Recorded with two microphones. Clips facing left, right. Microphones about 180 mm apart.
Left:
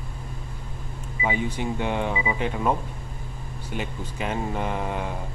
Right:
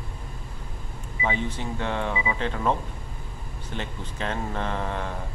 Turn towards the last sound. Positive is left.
turn(degrees=10)  # may be behind; listen again after turning